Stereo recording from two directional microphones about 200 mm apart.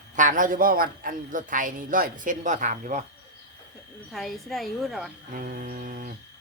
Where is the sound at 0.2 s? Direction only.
40° right (ahead or behind).